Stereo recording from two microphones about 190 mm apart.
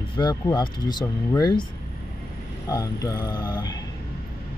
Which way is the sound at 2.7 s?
20° left (ahead or behind).